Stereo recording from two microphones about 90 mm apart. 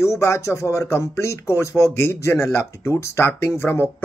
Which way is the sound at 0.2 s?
35° left (ahead or behind).